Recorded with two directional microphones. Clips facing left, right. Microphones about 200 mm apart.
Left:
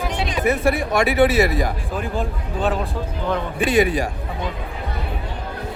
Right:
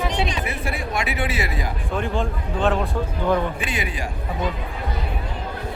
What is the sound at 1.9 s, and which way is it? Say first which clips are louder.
Speech: right 1 dB; 5° left (ahead or behind).